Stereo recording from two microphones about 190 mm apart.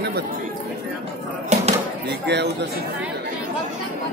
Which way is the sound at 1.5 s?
35° right (ahead or behind).